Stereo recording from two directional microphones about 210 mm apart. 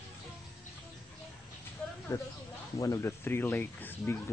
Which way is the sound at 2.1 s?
15° left (ahead or behind).